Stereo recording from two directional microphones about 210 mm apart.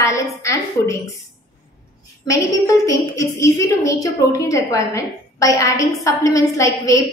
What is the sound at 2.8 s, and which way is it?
A woman's voice, 15° left (ahead or behind).